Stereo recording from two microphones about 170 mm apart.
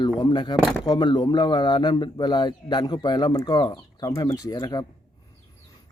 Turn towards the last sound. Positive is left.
turn(degrees=25)  # may be behind; listen again after turning